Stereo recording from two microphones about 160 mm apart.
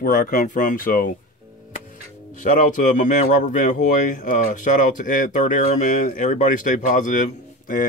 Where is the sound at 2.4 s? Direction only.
50° left (ahead or behind).